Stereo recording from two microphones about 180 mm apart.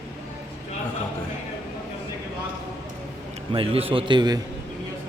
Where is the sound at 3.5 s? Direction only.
30° right (ahead or behind).